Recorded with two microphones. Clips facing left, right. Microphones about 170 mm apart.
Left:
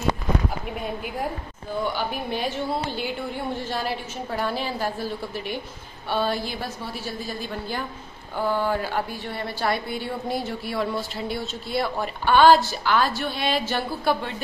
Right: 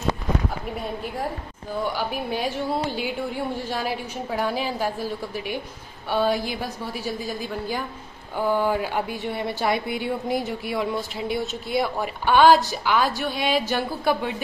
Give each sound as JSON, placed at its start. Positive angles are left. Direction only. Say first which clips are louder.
{"t": 0.7, "sound": "a woman's voice", "louder": "even", "side_deg": 0}